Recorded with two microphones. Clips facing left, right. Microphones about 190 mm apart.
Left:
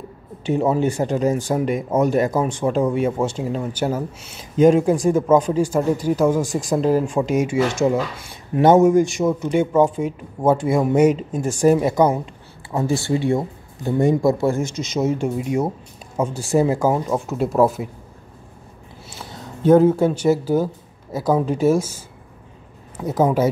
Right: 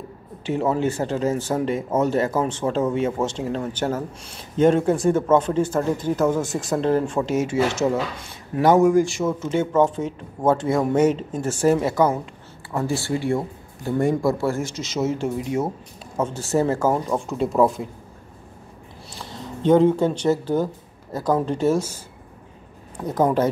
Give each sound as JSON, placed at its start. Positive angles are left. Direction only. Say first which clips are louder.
{"t": 0.5, "sound": "speech", "louder": "left 3 dB", "side_deg": 15}
{"t": 8.5, "sound": "speech", "louder": "left 3 dB", "side_deg": 20}
{"t": 19.1, "sound": "speech", "louder": "right 2 dB", "side_deg": 10}